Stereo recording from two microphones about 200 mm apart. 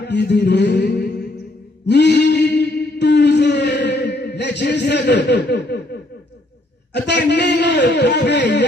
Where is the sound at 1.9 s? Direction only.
55° left (ahead or behind).